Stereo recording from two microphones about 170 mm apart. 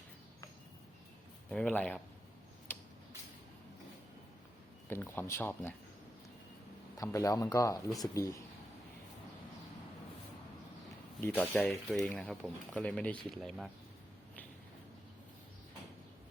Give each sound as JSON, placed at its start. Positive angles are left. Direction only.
{"t": 1.5, "sound": "speech", "side_deg": 10}
{"t": 2.7, "sound": "a sound", "side_deg": 10}
{"t": 4.9, "sound": "speech", "side_deg": 15}
{"t": 6.9, "sound": "speech", "side_deg": 20}
{"t": 11.3, "sound": "speech", "side_deg": 10}